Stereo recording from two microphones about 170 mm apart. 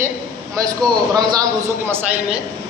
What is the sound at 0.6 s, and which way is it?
A man's voice, 20° right (ahead or behind).